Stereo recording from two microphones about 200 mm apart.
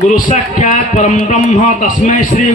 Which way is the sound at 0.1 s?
40° left (ahead or behind).